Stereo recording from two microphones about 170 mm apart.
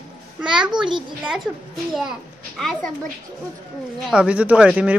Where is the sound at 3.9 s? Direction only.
Centre (ahead or behind).